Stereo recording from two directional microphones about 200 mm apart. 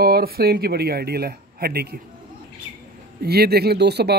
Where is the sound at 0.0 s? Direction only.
50° right (ahead or behind).